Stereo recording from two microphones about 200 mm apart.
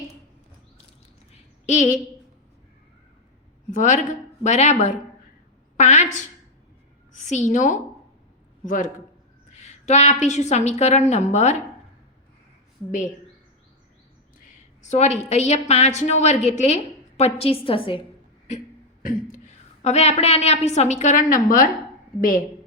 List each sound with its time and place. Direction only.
1.6 s a woman's voice: 40° left (ahead or behind)
3.7 s a woman's voice: 40° left (ahead or behind)
14.8 s a woman's voice: 35° left (ahead or behind)
19.0 s a woman's voice: 40° left (ahead or behind)